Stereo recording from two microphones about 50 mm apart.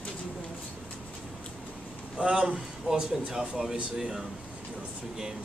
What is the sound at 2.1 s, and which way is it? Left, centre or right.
Speech, right.